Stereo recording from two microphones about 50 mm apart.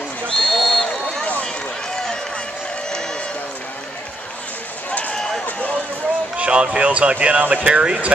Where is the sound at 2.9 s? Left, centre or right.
Centre.